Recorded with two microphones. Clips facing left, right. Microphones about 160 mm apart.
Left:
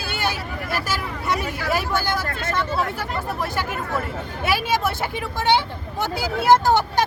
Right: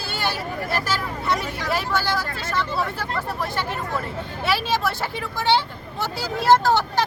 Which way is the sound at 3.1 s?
10° left (ahead or behind).